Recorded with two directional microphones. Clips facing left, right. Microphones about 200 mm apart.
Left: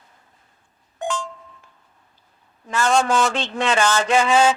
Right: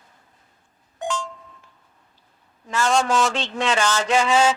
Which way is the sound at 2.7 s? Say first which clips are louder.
Left 1 dB; 55° left (ahead or behind).